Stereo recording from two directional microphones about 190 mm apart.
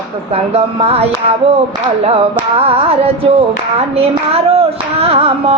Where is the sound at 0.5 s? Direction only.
30° right (ahead or behind).